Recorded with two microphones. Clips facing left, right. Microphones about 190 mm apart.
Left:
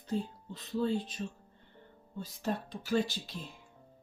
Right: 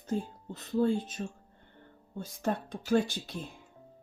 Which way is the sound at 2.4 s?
50° right (ahead or behind).